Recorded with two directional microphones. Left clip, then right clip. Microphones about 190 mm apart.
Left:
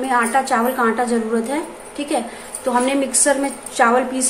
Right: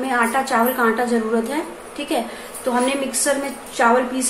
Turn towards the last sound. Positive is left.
turn(degrees=15)  # may be behind; listen again after turning